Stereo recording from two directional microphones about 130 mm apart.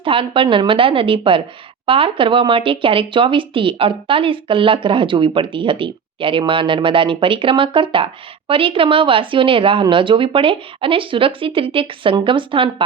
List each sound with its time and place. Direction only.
0.0 s speech: 45° right (ahead or behind)